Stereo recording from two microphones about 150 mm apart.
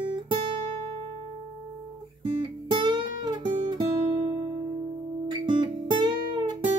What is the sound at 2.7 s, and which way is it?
Music, 30° right (ahead or behind).